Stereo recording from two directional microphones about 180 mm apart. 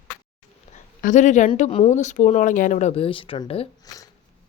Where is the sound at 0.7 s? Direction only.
45° left (ahead or behind).